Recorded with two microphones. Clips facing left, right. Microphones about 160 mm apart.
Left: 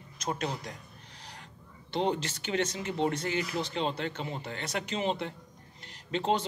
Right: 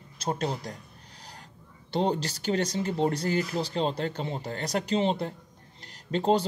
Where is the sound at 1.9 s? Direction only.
35° right (ahead or behind).